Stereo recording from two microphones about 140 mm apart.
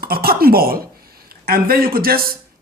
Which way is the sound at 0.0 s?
90° right.